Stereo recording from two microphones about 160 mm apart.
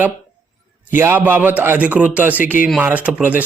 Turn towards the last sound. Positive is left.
turn(degrees=-10)  # may be behind; listen again after turning